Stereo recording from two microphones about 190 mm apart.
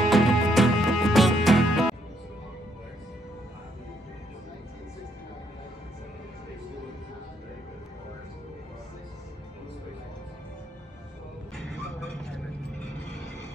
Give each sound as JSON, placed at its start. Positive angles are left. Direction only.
{"t": 0.0, "sound": "music", "side_deg": 0}
{"t": 11.5, "sound": "music", "side_deg": 5}